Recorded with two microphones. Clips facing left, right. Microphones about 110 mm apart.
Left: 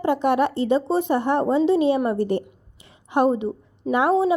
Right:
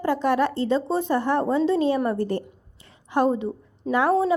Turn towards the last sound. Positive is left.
turn(degrees=15)  # may be behind; listen again after turning